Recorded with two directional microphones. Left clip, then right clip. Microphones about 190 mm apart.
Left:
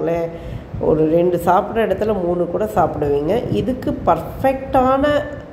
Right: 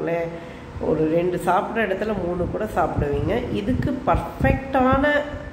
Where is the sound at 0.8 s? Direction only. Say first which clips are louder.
Left 6 dB; 25° left (ahead or behind).